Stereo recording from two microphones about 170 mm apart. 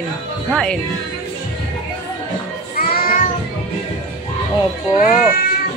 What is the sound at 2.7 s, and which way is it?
Music, 60° left (ahead or behind).